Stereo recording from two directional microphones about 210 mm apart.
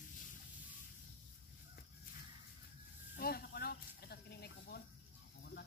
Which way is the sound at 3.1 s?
45° left (ahead or behind).